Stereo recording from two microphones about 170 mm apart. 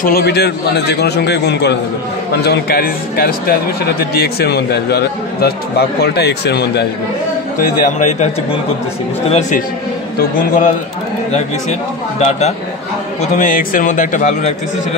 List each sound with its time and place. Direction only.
0.0 s speech: 65° left (ahead or behind)
2.4 s speech: 70° left (ahead or behind)
7.6 s a man's voice: 45° left (ahead or behind)
10.1 s a man's voice: 50° left (ahead or behind)
12.3 s a man's voice: 40° left (ahead or behind)